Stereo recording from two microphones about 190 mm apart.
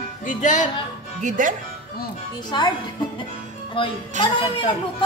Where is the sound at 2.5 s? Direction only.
25° left (ahead or behind).